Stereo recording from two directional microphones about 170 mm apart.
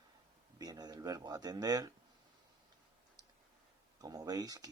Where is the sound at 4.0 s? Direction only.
20° right (ahead or behind).